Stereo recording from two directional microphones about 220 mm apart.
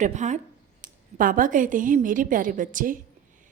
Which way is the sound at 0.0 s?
35° right (ahead or behind).